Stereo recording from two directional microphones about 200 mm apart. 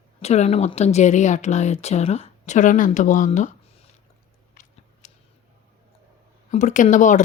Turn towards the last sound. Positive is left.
turn(degrees=40)  # may be behind; listen again after turning